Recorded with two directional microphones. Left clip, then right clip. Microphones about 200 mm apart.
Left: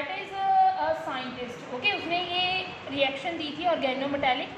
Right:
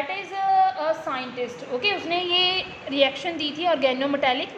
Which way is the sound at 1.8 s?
55° right (ahead or behind).